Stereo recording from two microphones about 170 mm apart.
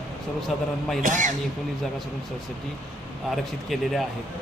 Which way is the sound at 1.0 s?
50° right (ahead or behind).